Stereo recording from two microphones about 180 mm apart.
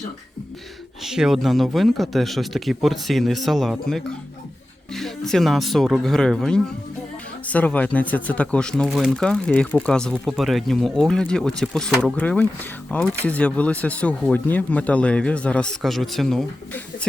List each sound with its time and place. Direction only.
1.0 s speech: centre (ahead or behind)